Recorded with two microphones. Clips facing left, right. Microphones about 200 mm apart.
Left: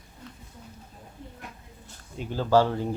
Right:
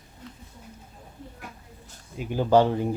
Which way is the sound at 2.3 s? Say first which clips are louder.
Right 2 dB; 15° right (ahead or behind).